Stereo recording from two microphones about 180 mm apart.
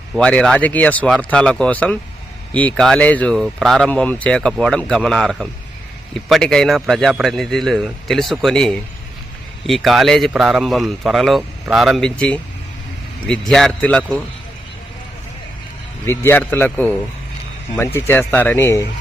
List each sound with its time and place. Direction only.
0.1 s speech: 5° left (ahead or behind)
16.0 s speech: 10° left (ahead or behind)